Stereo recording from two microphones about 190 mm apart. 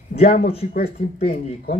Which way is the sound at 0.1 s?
55° left (ahead or behind).